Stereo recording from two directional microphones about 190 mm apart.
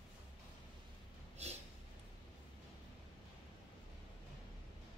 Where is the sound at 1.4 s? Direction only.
35° right (ahead or behind).